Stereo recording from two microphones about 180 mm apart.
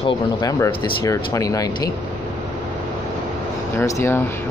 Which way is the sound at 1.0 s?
20° left (ahead or behind).